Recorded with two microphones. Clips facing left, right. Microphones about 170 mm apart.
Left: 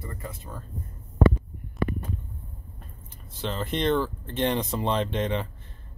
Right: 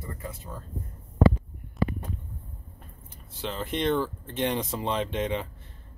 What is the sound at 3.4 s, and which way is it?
Speech, 10° right (ahead or behind).